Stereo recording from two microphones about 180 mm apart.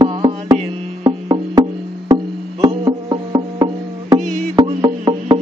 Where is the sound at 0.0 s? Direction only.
25° right (ahead or behind).